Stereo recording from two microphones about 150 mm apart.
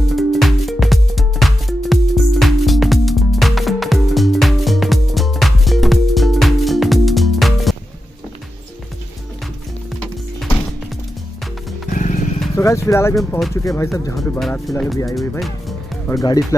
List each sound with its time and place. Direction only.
0.1 s music: centre (ahead or behind)
11.9 s music: 55° left (ahead or behind)
12.5 s speech: 20° left (ahead or behind)
15.1 s music: centre (ahead or behind)
16.1 s speech: 25° left (ahead or behind)